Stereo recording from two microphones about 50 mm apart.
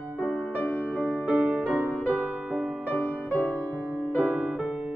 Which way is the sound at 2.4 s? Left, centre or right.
Centre.